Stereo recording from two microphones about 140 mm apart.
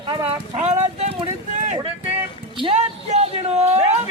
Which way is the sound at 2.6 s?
50° right (ahead or behind).